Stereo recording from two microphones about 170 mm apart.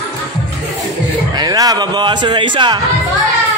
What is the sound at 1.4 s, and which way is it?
A man's voice, 20° right (ahead or behind).